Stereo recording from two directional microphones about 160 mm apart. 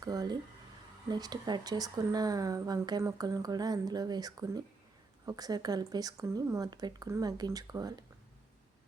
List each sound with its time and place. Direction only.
0.0 s speech: 25° right (ahead or behind)